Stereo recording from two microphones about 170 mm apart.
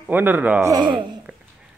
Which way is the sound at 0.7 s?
30° right (ahead or behind).